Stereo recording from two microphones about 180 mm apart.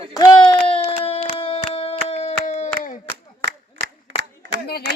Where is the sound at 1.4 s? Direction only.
30° left (ahead or behind).